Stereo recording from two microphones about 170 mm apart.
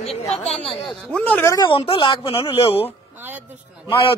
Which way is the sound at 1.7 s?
30° left (ahead or behind).